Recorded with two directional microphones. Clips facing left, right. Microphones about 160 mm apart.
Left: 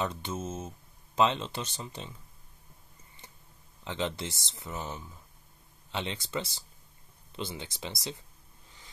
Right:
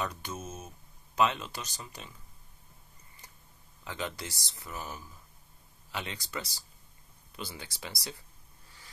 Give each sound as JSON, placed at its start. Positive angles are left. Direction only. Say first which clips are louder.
{"t": 0.0, "sound": "speech", "louder": "left 3 dB", "side_deg": 25}
{"t": 3.8, "sound": "speech", "louder": "left 4 dB", "side_deg": 25}
{"t": 8.6, "sound": "a sound", "louder": "left 1 dB", "side_deg": 20}